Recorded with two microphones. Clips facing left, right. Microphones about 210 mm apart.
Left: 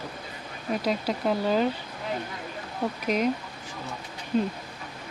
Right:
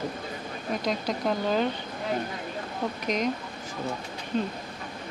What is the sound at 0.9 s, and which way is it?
Speech, 5° left (ahead or behind).